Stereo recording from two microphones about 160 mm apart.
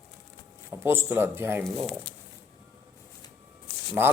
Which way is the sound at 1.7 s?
Centre (ahead or behind).